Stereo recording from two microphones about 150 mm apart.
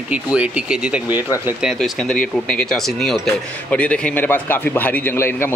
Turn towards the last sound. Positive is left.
turn(degrees=15)  # may be behind; listen again after turning